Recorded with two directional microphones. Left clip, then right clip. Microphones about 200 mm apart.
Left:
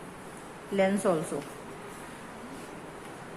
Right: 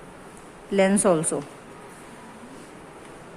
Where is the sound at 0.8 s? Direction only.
55° right (ahead or behind).